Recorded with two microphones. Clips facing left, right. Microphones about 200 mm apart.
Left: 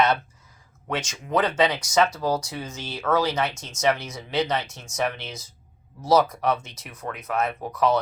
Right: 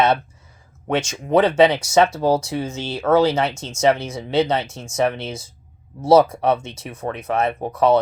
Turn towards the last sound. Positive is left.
turn(degrees=-25)  # may be behind; listen again after turning